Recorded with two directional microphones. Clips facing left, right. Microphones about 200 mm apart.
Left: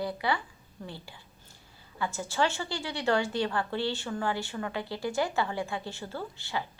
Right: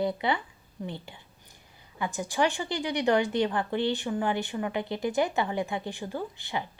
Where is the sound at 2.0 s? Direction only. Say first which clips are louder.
Right 2 dB; 15° right (ahead or behind).